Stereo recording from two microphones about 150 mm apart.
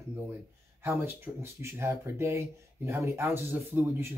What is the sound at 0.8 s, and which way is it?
Speech, 15° right (ahead or behind).